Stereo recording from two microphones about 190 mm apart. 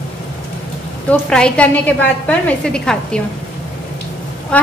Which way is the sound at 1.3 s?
5° left (ahead or behind).